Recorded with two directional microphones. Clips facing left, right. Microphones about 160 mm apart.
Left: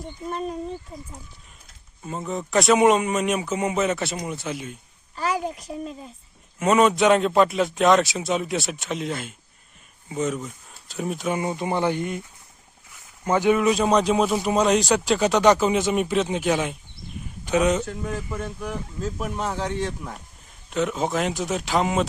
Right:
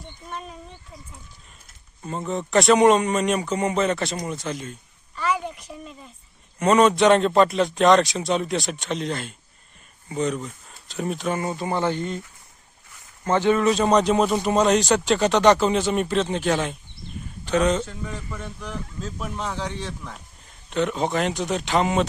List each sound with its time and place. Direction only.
0.0 s speech: 40° left (ahead or behind)
2.0 s speech: centre (ahead or behind)
5.1 s speech: 40° left (ahead or behind)
6.6 s a man's voice: 5° left (ahead or behind)
13.2 s a man's voice: 10° left (ahead or behind)